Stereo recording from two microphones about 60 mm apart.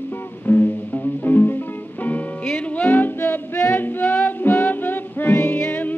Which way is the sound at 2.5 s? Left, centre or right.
Left.